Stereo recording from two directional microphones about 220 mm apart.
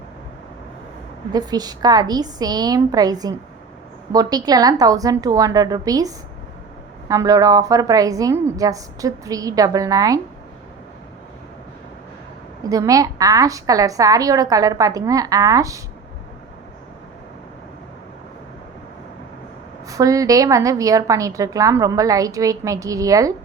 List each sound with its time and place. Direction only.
1.3 s a woman's voice: 20° right (ahead or behind)
12.6 s a woman's voice: 15° right (ahead or behind)
19.9 s a woman's voice: 15° right (ahead or behind)